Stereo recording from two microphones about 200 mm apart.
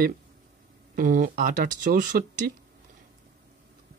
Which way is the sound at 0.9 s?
45° right (ahead or behind).